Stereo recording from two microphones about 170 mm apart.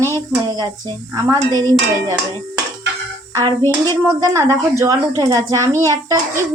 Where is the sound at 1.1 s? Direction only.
20° right (ahead or behind).